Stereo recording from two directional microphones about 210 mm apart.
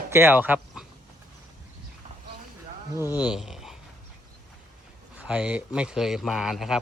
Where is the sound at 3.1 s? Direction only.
5° right (ahead or behind).